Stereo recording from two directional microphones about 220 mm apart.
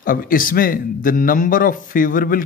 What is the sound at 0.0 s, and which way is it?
A man's voice, 40° left (ahead or behind).